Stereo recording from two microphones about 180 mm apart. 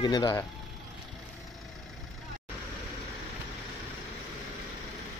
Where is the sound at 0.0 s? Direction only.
20° left (ahead or behind).